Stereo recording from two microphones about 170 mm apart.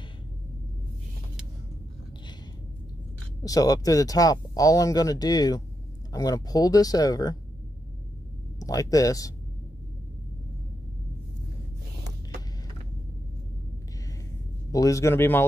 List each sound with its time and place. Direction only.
3.4 s speech: 20° left (ahead or behind)
8.5 s speech: 20° left (ahead or behind)
14.7 s a man's voice: 20° left (ahead or behind)